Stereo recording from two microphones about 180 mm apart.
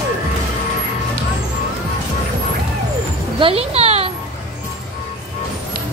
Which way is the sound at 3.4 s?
30° right (ahead or behind).